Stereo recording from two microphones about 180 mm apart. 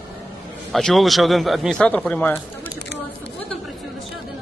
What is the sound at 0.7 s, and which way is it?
Speech, centre (ahead or behind).